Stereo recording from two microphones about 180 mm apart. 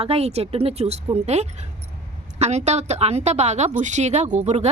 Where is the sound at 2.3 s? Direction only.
40° right (ahead or behind).